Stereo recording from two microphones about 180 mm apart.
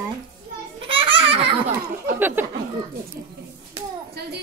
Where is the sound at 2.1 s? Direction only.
10° right (ahead or behind).